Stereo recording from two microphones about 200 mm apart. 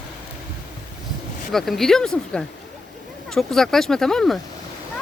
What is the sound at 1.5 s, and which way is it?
Speech, centre (ahead or behind).